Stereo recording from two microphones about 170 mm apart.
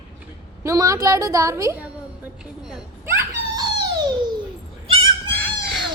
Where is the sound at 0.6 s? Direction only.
20° right (ahead or behind).